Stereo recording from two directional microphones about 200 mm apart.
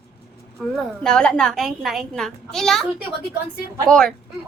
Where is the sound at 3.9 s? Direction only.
5° left (ahead or behind).